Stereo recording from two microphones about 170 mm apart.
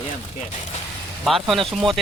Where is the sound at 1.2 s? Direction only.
Centre (ahead or behind).